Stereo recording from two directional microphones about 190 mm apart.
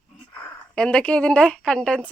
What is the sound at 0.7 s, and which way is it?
Speech, 5° left (ahead or behind).